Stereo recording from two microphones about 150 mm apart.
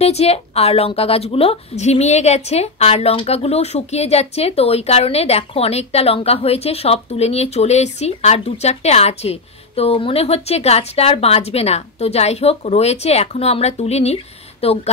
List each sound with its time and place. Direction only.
0.0 s a woman's voice: 45° left (ahead or behind)